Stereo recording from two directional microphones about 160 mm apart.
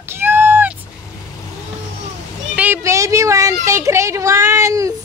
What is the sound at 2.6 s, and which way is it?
Speech, 15° right (ahead or behind).